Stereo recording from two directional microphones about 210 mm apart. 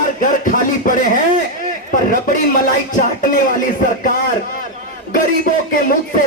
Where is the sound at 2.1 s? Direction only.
40° left (ahead or behind).